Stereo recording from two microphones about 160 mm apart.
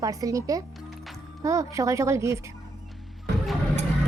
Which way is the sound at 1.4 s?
20° right (ahead or behind).